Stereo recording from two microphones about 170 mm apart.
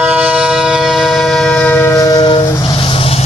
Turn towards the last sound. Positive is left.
turn(degrees=35)  # may be behind; listen again after turning